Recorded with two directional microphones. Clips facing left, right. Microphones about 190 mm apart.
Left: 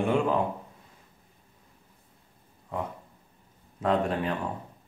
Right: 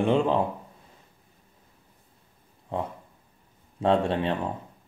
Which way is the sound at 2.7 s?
30° right (ahead or behind).